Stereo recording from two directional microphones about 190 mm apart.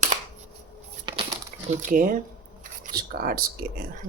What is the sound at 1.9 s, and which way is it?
Speech, 45° right (ahead or behind).